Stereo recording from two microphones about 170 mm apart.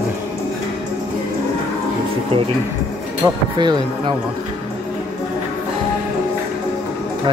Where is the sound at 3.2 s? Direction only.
25° right (ahead or behind).